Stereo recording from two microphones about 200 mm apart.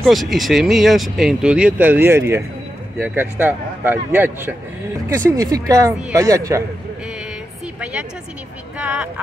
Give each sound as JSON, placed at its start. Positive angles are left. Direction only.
{"t": 0.0, "sound": "speech", "side_deg": 0}
{"t": 8.7, "sound": "speech", "side_deg": -5}